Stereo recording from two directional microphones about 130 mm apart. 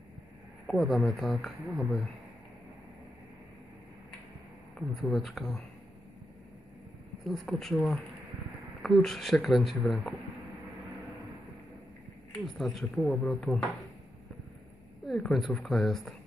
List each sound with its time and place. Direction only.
0.7 s speech: 5° left (ahead or behind)
4.7 s speech: centre (ahead or behind)
7.2 s speech: centre (ahead or behind)
12.4 s speech: centre (ahead or behind)
15.0 s speech: centre (ahead or behind)